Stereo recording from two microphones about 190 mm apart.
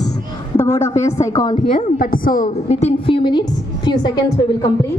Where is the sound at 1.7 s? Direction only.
50° left (ahead or behind); by 4.9 s 20° left (ahead or behind).